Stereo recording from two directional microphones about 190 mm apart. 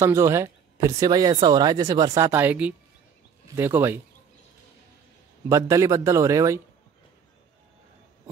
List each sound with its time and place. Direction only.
0.0 s speech: 15° right (ahead or behind)
5.5 s speech: 15° right (ahead or behind)